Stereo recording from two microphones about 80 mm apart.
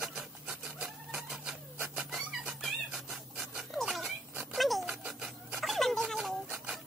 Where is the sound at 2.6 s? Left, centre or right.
Centre.